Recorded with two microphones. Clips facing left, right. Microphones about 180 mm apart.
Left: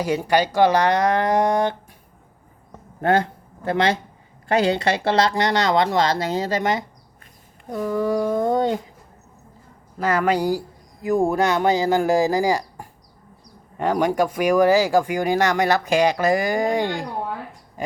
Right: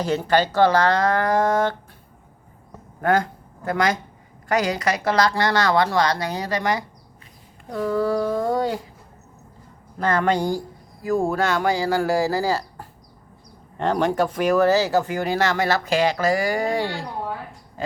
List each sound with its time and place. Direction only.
0.0 s speech: 10° left (ahead or behind)
3.0 s a woman's voice: 25° left (ahead or behind)
10.0 s speech: 10° left (ahead or behind)
11.0 s a woman's voice: 20° left (ahead or behind)